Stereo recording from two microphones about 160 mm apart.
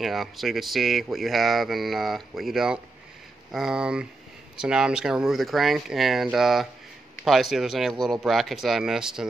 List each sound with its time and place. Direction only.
0.0 s speech: centre (ahead or behind)